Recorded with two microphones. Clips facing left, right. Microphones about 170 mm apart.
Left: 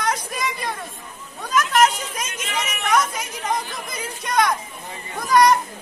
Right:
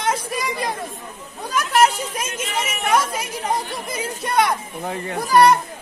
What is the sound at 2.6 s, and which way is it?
Speech, 30° right (ahead or behind).